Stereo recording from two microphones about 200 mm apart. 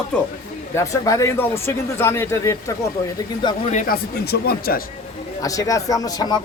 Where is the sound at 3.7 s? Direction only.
40° left (ahead or behind).